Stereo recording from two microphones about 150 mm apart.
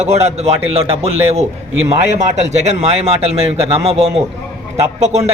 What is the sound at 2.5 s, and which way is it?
Speech, 45° right (ahead or behind).